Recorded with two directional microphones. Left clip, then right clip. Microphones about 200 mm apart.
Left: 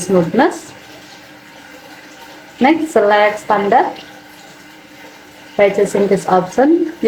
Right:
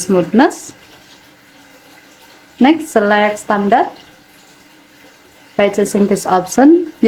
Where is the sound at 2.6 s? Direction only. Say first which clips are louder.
Even; 35° right (ahead or behind).